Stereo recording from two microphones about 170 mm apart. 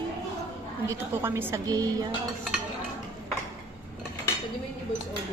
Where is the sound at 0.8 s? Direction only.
15° right (ahead or behind).